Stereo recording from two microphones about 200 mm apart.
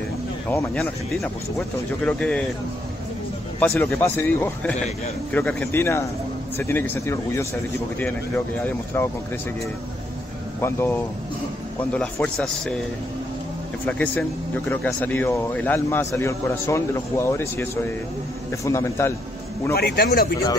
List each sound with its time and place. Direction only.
0.5 s speech: 5° left (ahead or behind)
3.5 s speech: 10° left (ahead or behind)
4.7 s a man's voice: 35° left (ahead or behind)
5.3 s speech: 10° left (ahead or behind)
8.6 s speech: 10° left (ahead or behind)
10.6 s speech: 10° left (ahead or behind)
13.8 s speech: 10° left (ahead or behind)
19.7 s a man's voice: 50° left (ahead or behind)